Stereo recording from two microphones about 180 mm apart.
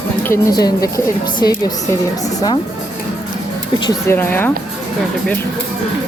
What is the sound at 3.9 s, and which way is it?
Speech, 15° left (ahead or behind).